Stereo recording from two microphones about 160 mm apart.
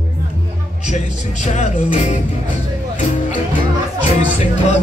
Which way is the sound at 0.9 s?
45° left (ahead or behind).